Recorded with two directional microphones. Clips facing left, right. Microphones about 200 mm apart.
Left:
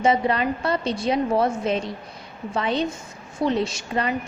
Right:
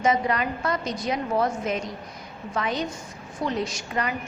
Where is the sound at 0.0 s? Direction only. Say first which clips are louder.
Left 3 dB; 30° left (ahead or behind).